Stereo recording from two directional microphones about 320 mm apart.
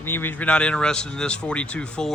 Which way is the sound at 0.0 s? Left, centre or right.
Centre.